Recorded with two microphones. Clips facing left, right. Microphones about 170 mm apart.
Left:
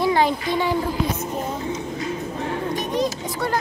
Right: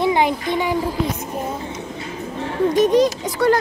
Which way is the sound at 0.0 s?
20° right (ahead or behind).